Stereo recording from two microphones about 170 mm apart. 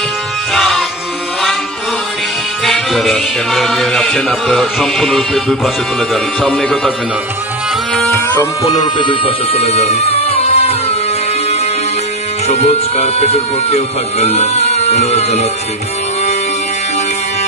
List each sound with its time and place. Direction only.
0.5 s music: centre (ahead or behind)
2.6 s music: centre (ahead or behind)
7.9 s music: 5° left (ahead or behind)
8.4 s speech: 20° left (ahead or behind)
12.4 s speech: 40° left (ahead or behind)